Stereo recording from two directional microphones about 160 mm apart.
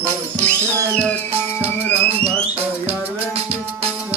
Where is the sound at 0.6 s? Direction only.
15° right (ahead or behind).